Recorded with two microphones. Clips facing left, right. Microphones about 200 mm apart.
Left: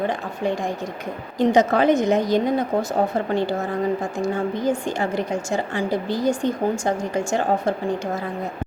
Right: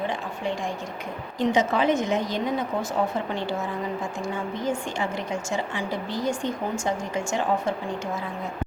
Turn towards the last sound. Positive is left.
turn(degrees=40)  # may be behind; listen again after turning